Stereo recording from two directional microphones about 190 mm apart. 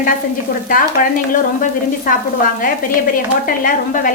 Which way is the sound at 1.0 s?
45° left (ahead or behind).